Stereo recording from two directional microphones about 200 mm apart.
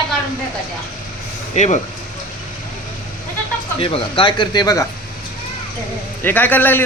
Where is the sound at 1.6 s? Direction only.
35° left (ahead or behind).